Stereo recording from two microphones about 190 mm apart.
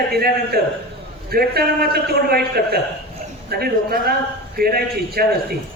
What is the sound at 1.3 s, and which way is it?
A man's voice, 55° right (ahead or behind).